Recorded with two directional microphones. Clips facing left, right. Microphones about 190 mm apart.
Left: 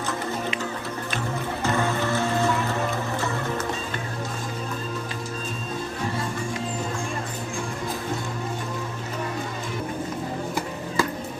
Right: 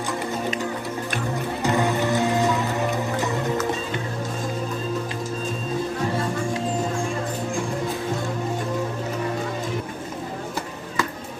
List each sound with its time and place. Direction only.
1.6 s music: 15° right (ahead or behind)